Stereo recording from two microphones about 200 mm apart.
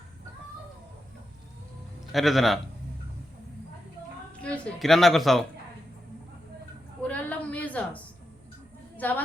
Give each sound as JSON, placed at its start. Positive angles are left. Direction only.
{"t": 2.1, "sound": "a woman's voice", "side_deg": 0}
{"t": 4.4, "sound": "a woman's voice", "side_deg": 5}
{"t": 7.1, "sound": "a sound", "side_deg": 5}
{"t": 9.0, "sound": "a woman's voice", "side_deg": 10}